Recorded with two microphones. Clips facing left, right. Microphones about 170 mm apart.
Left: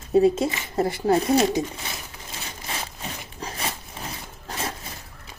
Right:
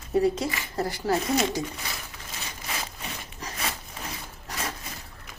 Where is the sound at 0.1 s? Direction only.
25° left (ahead or behind).